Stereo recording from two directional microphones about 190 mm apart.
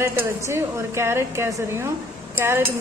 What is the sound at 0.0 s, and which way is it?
Speech, 15° right (ahead or behind).